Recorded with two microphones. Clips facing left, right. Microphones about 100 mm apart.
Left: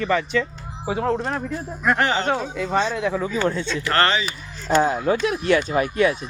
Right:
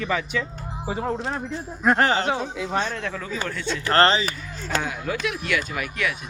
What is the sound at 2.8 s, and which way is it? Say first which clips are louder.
Speech: left 6 dB; 15° left (ahead or behind).